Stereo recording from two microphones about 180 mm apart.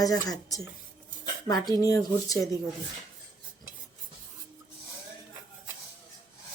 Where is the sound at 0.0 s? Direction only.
20° left (ahead or behind).